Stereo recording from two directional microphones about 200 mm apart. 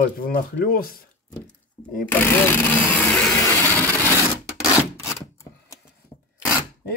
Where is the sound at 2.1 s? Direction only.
10° left (ahead or behind).